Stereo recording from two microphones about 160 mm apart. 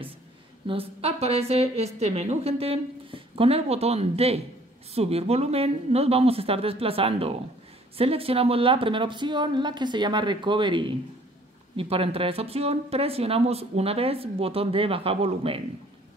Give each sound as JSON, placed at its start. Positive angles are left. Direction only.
{"t": 0.7, "sound": "speech", "side_deg": -40}